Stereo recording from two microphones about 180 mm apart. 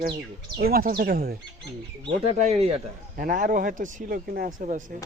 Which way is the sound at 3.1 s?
50° right (ahead or behind).